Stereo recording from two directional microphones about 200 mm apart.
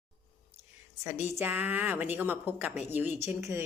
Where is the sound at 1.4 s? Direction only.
10° right (ahead or behind).